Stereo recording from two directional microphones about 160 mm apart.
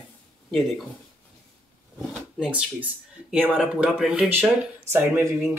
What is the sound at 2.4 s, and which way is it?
Speech, 5° right (ahead or behind).